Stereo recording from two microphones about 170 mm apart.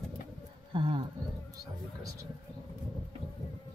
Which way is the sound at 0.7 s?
30° right (ahead or behind).